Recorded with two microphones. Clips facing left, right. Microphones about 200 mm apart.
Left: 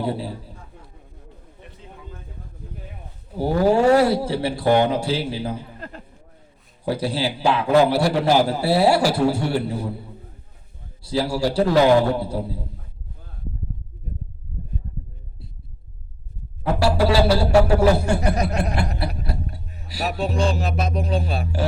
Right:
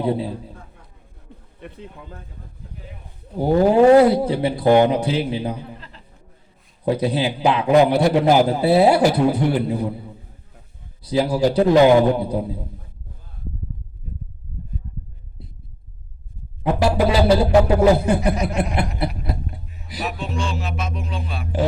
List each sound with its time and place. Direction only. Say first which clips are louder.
0.0 s a man's voice: right 4 dB; 20° right (ahead or behind)
1.6 s speech: right 6 dB; 60° right (ahead or behind)
3.3 s a man's voice: right 3 dB; 20° right (ahead or behind)
5.8 s a sound: left 9 dB; 50° left (ahead or behind)
6.8 s a man's voice: right 3 dB; 20° right (ahead or behind)
11.0 s a man's voice: right 4 dB; 20° right (ahead or behind)
16.6 s a man's voice: right 1 dB; 20° right (ahead or behind)
18.9 s a sound: right 3 dB; 20° right (ahead or behind)
20.0 s music: left 4 dB; 35° left (ahead or behind)